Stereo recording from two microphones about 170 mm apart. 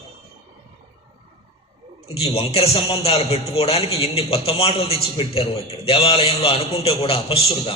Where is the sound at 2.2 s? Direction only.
35° left (ahead or behind).